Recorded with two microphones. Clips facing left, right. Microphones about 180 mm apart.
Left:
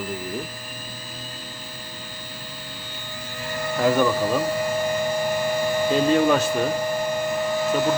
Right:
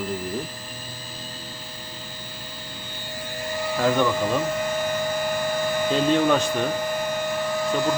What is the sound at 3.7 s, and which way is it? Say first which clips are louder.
Speech: left 2 dB; 5° left (ahead or behind).